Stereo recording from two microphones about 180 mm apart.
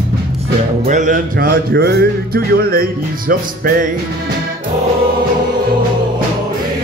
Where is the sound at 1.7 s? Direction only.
65° right (ahead or behind).